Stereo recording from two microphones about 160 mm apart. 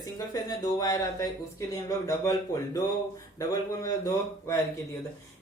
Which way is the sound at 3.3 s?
20° left (ahead or behind).